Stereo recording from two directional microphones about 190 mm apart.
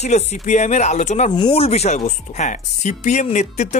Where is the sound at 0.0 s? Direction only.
35° left (ahead or behind).